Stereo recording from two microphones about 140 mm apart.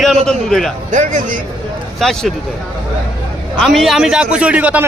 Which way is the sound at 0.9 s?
65° right (ahead or behind).